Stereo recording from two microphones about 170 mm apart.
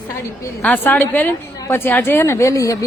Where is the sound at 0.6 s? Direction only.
10° left (ahead or behind).